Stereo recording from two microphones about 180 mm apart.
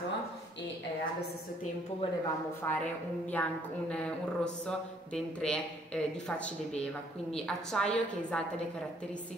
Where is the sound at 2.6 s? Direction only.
15° left (ahead or behind).